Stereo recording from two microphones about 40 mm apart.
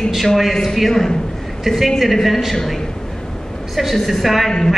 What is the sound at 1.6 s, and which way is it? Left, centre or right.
Speech, centre.